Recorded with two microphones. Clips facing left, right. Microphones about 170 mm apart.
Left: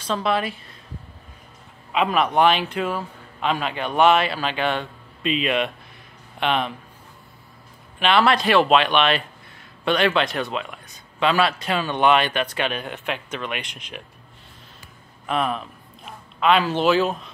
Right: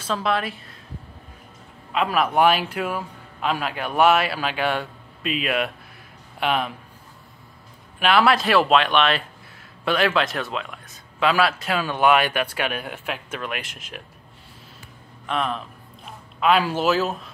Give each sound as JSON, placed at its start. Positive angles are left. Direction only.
{"t": 0.0, "sound": "speech", "side_deg": 0}
{"t": 1.9, "sound": "speech", "side_deg": 0}
{"t": 8.0, "sound": "speech", "side_deg": -5}
{"t": 15.2, "sound": "a man's voice", "side_deg": 5}